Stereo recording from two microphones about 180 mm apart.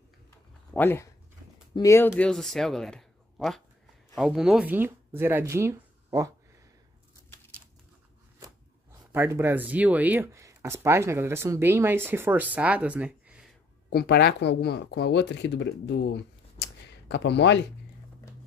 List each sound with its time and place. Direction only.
0.7 s speech: 15° left (ahead or behind); by 6.3 s 20° right (ahead or behind)
9.1 s speech: 15° right (ahead or behind)
13.8 s speech: 60° left (ahead or behind)